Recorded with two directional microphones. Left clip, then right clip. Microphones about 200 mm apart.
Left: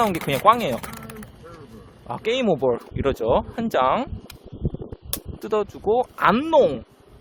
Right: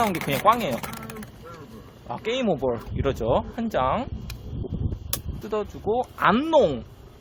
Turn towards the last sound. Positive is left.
turn(degrees=35)  # may be behind; listen again after turning